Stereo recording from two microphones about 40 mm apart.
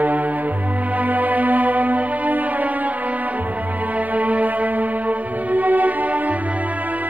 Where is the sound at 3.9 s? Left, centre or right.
Right.